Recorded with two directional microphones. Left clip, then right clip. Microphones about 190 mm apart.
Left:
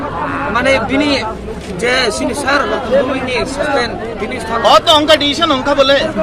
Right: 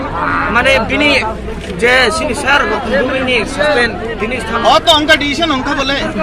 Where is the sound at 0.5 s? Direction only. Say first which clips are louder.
Even; 75° left (ahead or behind).